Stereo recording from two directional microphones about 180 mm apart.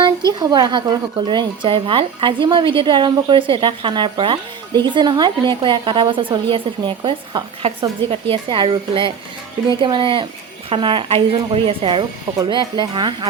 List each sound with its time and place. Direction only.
0.3 s a woman's voice: 20° right (ahead or behind)